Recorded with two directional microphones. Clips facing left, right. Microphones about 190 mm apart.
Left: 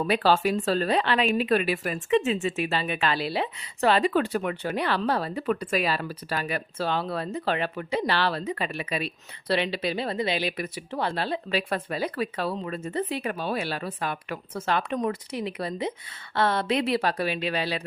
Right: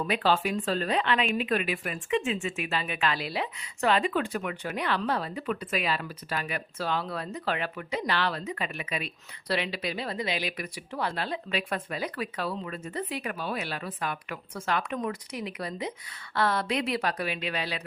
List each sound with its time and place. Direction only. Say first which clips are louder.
0.0 s a woman's voice: left 4 dB; 35° left (ahead or behind)